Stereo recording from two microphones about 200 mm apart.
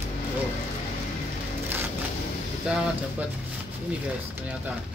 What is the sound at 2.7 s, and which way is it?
Speech, 5° right (ahead or behind).